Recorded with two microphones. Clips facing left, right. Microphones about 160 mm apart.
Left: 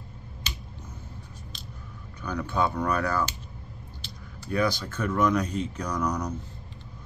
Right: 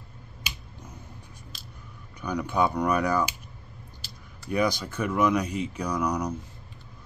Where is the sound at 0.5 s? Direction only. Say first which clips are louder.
Left 1 dB; 10° right (ahead or behind).